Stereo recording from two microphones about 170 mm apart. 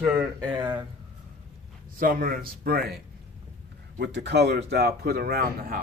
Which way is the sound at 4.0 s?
85° right.